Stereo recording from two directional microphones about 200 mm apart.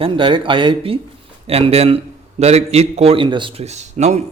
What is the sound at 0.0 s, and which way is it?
A man's voice, 25° right (ahead or behind).